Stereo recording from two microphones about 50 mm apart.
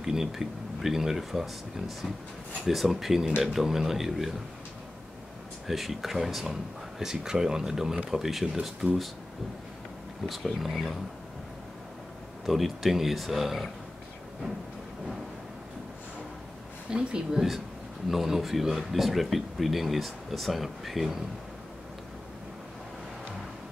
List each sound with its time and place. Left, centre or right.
0.0 s speech: centre
5.7 s speech: centre
10.2 s speech: centre
12.4 s speech: centre
16.9 s speech: centre
18.0 s speech: centre